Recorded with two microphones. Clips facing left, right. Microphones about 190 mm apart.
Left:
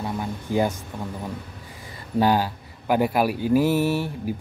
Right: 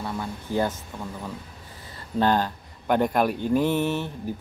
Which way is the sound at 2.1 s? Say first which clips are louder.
Left 2 dB; 10° left (ahead or behind).